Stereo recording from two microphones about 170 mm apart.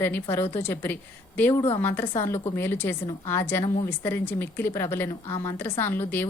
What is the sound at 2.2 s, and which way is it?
A woman's voice, 15° left (ahead or behind).